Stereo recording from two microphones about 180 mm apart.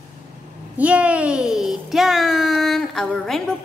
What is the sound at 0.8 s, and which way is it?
A child's voice, 5° right (ahead or behind).